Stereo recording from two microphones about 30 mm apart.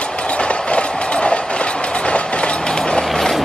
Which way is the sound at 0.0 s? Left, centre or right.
Left.